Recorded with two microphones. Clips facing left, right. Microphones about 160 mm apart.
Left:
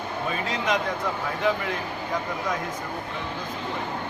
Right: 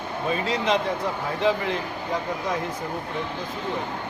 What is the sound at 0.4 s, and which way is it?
Speech, 30° right (ahead or behind).